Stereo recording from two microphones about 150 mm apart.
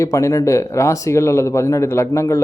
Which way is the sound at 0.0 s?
20° left (ahead or behind).